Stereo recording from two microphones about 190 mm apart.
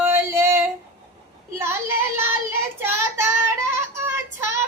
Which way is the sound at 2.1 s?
10° right (ahead or behind).